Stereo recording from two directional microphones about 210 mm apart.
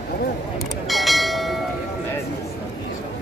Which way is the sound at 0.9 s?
Centre (ahead or behind).